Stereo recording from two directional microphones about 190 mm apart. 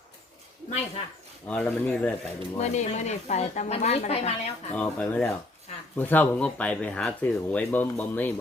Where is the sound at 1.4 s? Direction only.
5° left (ahead or behind).